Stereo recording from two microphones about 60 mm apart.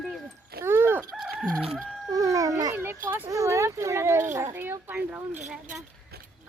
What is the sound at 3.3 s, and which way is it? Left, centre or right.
Speech, right.